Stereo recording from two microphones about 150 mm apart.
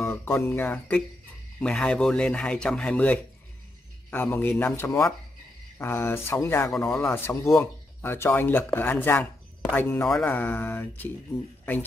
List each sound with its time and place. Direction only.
0.0 s speech: 15° left (ahead or behind)